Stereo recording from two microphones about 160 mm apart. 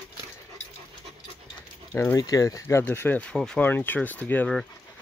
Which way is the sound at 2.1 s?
20° left (ahead or behind).